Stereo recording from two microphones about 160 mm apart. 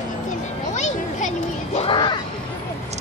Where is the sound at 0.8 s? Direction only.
45° left (ahead or behind).